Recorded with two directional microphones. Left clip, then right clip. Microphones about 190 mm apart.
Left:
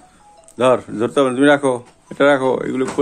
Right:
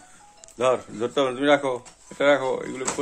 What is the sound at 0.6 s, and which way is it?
Speech, 50° left (ahead or behind).